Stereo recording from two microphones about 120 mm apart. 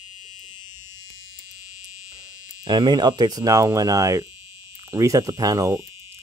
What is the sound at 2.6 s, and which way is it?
Speech, 35° right (ahead or behind).